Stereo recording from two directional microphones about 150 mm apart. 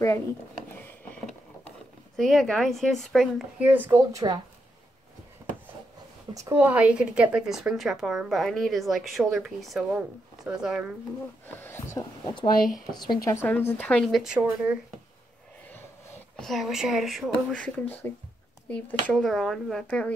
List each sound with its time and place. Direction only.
2.1 s a woman's voice: 5° left (ahead or behind); by 4.4 s 20° right (ahead or behind)
6.5 s a woman's voice: 10° right (ahead or behind)
11.4 s a sound: 15° left (ahead or behind)
12.9 s a woman's voice: 30° left (ahead or behind)
13.3 s a woman's voice: 15° left (ahead or behind); by 14.8 s 10° right (ahead or behind)
16.3 s a woman's voice: centre (ahead or behind)